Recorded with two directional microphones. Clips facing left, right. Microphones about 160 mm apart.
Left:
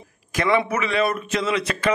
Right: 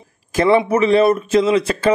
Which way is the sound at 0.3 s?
30° right (ahead or behind).